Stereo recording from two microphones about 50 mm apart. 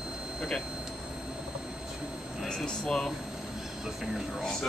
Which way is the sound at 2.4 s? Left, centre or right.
Centre.